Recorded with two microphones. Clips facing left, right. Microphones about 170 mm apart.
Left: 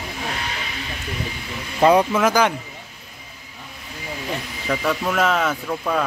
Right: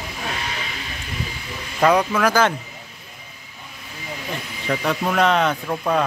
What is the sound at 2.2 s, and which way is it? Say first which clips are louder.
Speech: even; 20° left (ahead or behind).